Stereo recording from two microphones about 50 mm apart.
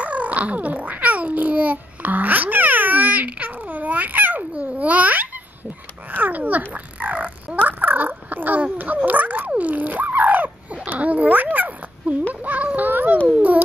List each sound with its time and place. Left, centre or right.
0.0 s babbling: right
4.4 s speech: right
6.1 s fowl: right
8.7 s a child's voice: right
9.5 s babbling: right
12.4 s a sound: right